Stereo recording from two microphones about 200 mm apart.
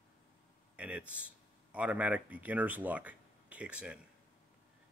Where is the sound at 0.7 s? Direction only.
5° right (ahead or behind).